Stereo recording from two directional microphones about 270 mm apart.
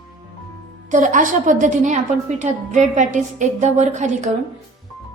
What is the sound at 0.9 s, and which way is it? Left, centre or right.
A woman's voice, right.